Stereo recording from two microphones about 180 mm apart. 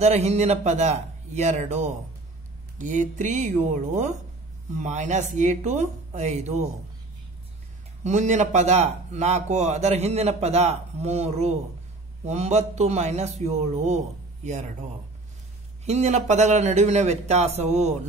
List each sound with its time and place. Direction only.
0.0 s speech: 35° right (ahead or behind)
8.0 s speech: 40° right (ahead or behind)
15.8 s speech: 40° right (ahead or behind)